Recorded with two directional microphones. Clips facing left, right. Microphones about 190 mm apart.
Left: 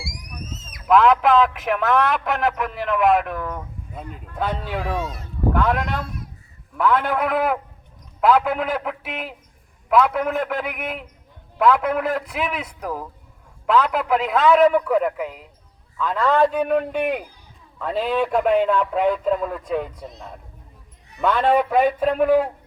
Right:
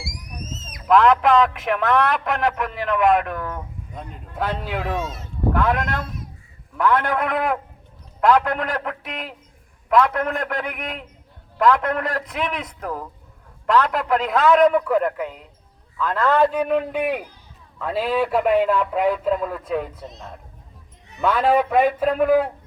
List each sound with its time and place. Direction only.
0.9 s a man's voice: 5° left (ahead or behind)
4.9 s speech: 25° right (ahead or behind)
5.5 s a man's voice: centre (ahead or behind)
21.2 s a man's voice: 5° right (ahead or behind)